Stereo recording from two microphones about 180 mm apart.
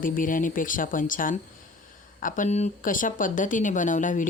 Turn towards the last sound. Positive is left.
turn(degrees=45)  # may be behind; listen again after turning